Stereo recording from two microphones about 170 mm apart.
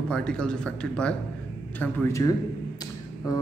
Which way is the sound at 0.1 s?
5° left (ahead or behind).